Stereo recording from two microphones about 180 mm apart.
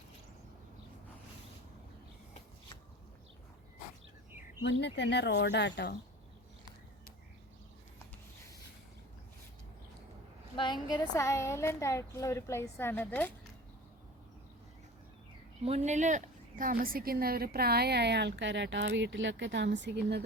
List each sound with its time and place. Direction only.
4.6 s speech: 75° left (ahead or behind)
10.6 s a woman's voice: 25° left (ahead or behind)
15.6 s a woman's voice: 35° right (ahead or behind); by 20.2 s 65° right (ahead or behind)